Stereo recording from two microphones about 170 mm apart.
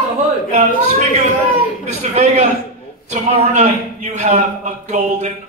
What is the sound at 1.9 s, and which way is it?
A man's voice, 45° right (ahead or behind).